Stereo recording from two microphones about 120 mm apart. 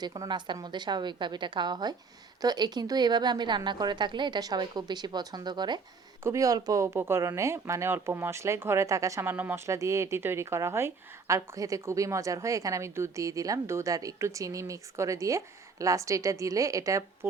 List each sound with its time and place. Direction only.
0.0 s a woman's voice: 35° right (ahead or behind)
6.2 s speech: 25° right (ahead or behind)